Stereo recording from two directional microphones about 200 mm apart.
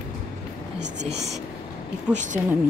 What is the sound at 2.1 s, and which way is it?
Speech, 40° right (ahead or behind).